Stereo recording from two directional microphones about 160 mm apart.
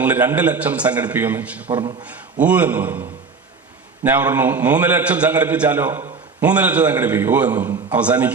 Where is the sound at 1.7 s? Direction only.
30° right (ahead or behind).